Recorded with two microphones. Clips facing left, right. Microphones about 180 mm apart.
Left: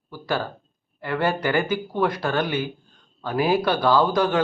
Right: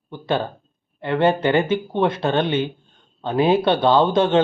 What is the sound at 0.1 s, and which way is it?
A man's voice, 25° right (ahead or behind).